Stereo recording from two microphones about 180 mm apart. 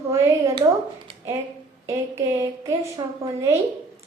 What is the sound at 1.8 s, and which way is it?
A woman's voice, 15° right (ahead or behind).